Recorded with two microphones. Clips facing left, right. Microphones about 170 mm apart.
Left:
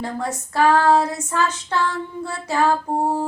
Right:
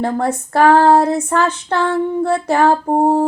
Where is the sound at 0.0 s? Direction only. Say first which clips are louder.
Right 8 dB; 60° right (ahead or behind).